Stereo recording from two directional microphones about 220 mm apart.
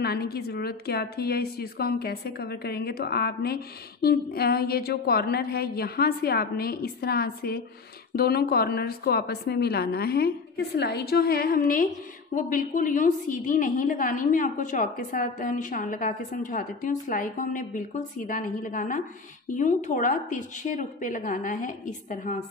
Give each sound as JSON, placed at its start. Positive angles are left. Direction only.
{"t": 0.0, "sound": "a woman's voice", "side_deg": 45}